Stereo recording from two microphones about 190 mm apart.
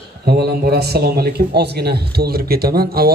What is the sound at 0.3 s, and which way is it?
A man's voice, 55° right (ahead or behind).